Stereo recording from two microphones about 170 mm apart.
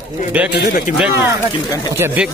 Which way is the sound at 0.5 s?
65° left (ahead or behind).